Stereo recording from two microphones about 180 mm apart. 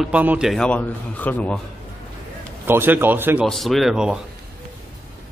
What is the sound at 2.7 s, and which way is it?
Speech, 10° right (ahead or behind).